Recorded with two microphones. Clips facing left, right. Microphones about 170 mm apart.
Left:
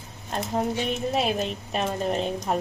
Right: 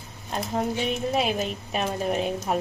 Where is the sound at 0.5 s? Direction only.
Centre (ahead or behind).